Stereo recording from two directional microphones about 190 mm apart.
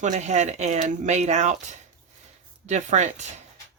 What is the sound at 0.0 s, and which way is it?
Speech, 40° right (ahead or behind).